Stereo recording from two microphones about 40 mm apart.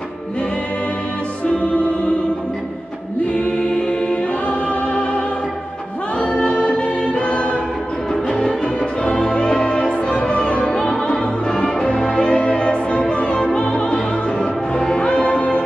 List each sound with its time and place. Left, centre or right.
3.3 s choir: left
8.1 s music: centre
10.8 s opera: centre
12.1 s music: left